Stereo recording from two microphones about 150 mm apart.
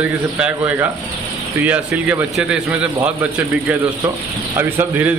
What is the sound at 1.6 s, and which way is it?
A man's voice, 10° right (ahead or behind).